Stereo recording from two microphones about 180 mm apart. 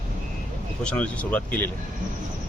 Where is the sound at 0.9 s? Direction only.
5° left (ahead or behind).